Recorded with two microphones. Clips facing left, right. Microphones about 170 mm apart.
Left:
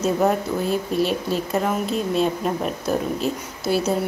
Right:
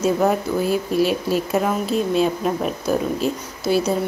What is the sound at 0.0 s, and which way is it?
A woman's voice, centre (ahead or behind).